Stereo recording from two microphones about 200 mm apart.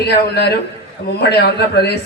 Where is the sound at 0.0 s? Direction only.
55° left (ahead or behind).